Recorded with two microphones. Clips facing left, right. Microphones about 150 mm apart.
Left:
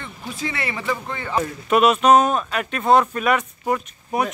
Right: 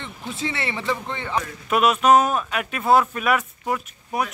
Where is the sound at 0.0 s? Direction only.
25° right (ahead or behind).